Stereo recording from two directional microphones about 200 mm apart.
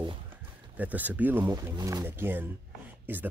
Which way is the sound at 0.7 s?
10° right (ahead or behind).